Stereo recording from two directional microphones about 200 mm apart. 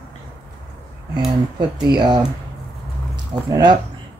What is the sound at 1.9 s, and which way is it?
Speech, 20° right (ahead or behind).